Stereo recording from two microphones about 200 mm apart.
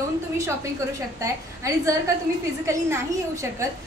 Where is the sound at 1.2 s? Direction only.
15° right (ahead or behind).